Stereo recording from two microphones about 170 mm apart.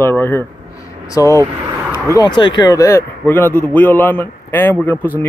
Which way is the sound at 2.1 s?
25° left (ahead or behind).